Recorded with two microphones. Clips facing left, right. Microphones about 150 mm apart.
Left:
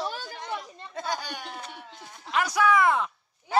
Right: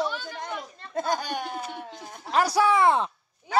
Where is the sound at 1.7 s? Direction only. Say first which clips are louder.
Right 6 dB; 40° right (ahead or behind).